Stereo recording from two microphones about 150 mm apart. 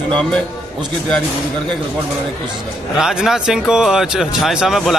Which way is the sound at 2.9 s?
5° right (ahead or behind).